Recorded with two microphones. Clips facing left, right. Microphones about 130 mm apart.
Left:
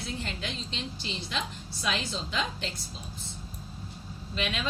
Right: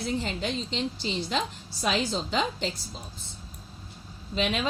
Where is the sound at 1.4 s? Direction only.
60° right (ahead or behind).